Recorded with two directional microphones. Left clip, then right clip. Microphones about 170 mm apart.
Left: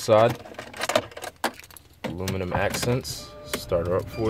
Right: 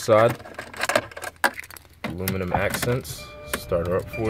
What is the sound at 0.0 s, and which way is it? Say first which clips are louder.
Keys jangling: right 1 dB; 10° right (ahead or behind).